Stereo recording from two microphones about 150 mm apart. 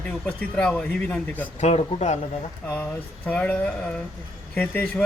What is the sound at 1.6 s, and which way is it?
Speech, 50° left (ahead or behind).